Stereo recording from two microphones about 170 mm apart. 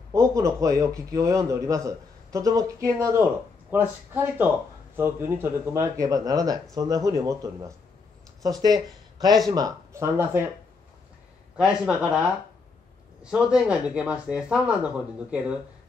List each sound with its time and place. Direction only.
0.1 s a man's voice: 20° right (ahead or behind)
11.5 s speech: 5° right (ahead or behind)